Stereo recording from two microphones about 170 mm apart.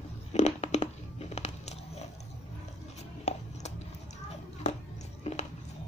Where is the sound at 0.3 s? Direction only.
40° left (ahead or behind).